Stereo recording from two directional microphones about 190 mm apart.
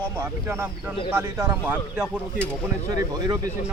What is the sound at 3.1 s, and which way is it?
Speech, 20° right (ahead or behind).